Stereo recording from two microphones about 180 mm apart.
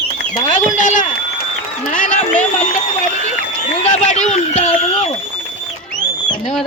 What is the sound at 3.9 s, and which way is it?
Speech, 40° left (ahead or behind).